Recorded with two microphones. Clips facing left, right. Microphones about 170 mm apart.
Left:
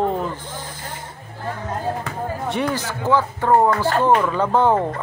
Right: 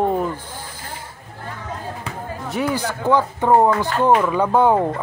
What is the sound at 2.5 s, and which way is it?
Speech, 5° right (ahead or behind).